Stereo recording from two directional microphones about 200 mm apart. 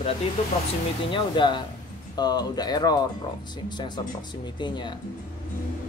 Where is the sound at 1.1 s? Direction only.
25° left (ahead or behind).